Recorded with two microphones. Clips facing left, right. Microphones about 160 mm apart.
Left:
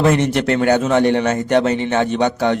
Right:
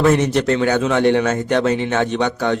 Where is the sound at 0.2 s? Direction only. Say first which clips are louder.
Even; 55° left (ahead or behind).